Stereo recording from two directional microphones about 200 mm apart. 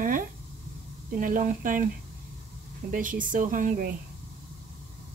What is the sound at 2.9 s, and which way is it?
Speech, 40° right (ahead or behind).